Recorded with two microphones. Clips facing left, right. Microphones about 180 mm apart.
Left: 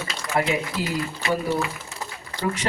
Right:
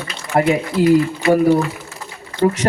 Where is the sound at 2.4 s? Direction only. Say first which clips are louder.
Right 10 dB; 45° right (ahead or behind).